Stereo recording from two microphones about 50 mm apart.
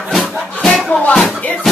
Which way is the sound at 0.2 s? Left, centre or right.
Left.